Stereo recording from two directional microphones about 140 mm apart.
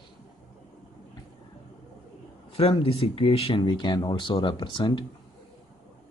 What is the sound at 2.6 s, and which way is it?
Speech, 45° left (ahead or behind).